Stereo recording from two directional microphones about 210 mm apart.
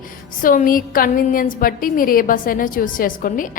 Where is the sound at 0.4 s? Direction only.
40° left (ahead or behind).